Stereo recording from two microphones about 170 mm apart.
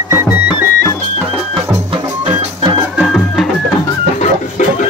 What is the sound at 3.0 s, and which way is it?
Music, centre (ahead or behind).